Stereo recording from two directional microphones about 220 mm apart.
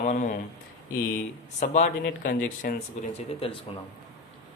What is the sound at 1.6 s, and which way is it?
Speech, 35° left (ahead or behind).